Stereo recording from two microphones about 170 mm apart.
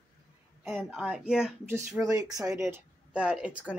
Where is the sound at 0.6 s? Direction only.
Centre (ahead or behind).